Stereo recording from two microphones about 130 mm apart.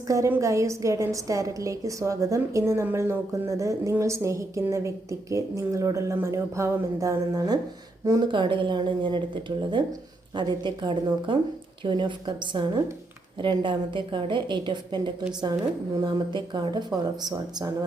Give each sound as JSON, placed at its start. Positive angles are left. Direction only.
{"t": 0.1, "sound": "a woman's voice", "side_deg": -25}